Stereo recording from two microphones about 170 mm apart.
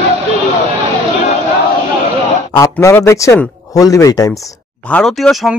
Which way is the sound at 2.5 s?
15° left (ahead or behind).